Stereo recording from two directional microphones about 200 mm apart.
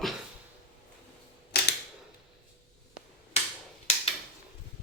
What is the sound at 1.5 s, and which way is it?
Camera, 50° left (ahead or behind).